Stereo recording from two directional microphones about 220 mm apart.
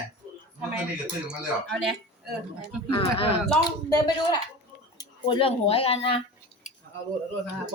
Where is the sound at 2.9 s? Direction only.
25° left (ahead or behind).